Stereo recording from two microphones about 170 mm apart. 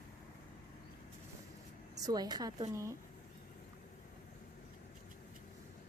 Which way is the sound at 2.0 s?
20° right (ahead or behind).